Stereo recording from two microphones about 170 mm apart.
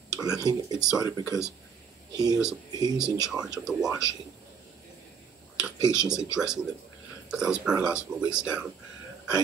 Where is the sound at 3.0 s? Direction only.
5° right (ahead or behind).